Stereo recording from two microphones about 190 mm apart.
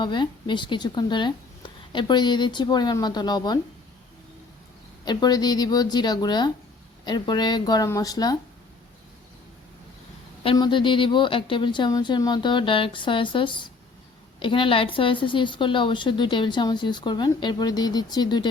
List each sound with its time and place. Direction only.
0.0 s a woman's voice: 25° left (ahead or behind)
5.0 s a woman's voice: 20° left (ahead or behind)
10.4 s a woman's voice: 25° left (ahead or behind)